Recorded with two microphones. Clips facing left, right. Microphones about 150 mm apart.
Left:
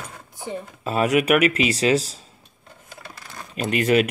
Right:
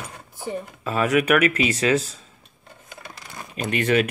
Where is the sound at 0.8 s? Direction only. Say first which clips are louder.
Left 1 dB; 35° left (ahead or behind).